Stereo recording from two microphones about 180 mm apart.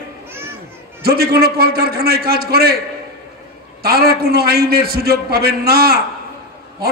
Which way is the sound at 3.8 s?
60° right (ahead or behind).